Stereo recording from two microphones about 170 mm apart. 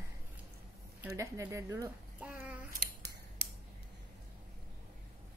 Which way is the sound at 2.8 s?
70° right (ahead or behind).